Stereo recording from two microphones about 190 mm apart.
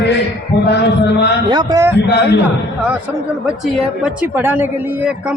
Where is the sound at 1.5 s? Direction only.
20° right (ahead or behind).